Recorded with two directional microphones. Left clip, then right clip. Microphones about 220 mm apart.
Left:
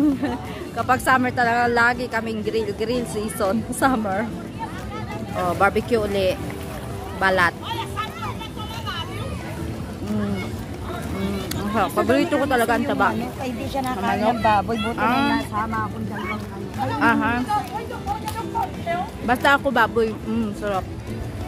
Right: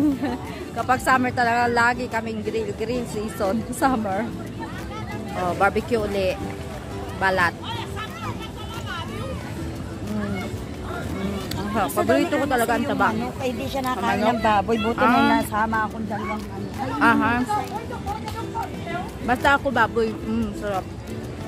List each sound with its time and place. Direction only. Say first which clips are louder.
0.2 s speech: left 1 dB; 5° left (ahead or behind)
5.6 s speech: left 2 dB; 5° left (ahead or behind)
11.7 s speech: left 1 dB; 10° left (ahead or behind)
13.7 s speech: left 1 dB; 20° right (ahead or behind)
15.0 s speech: right 2 dB; 5° right (ahead or behind)
15.3 s speech: right 3 dB; 45° right (ahead or behind)
17.0 s speech: right 1 dB; 5° right (ahead or behind)
19.2 s speech: left 1 dB; 5° left (ahead or behind)